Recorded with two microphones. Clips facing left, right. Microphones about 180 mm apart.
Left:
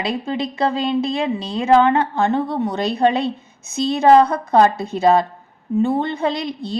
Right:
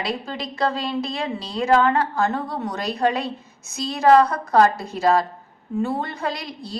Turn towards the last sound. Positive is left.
turn(degrees=25)  # may be behind; listen again after turning